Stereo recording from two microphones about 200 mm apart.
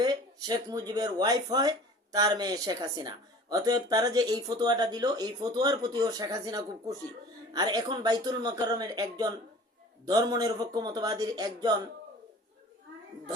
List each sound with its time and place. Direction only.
0.0 s speech: 20° right (ahead or behind)